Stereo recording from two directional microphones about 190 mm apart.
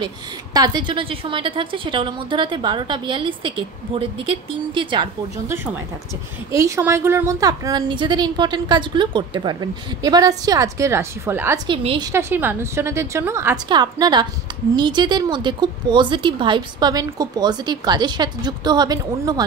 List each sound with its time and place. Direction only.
0.0 s a woman's voice: 20° right (ahead or behind)
6.5 s a woman's voice: 15° right (ahead or behind)
12.1 s a woman's voice: 15° right (ahead or behind)